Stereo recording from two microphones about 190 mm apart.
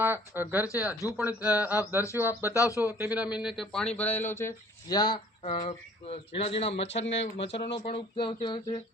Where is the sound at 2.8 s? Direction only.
10° right (ahead or behind); by 5.1 s 20° left (ahead or behind).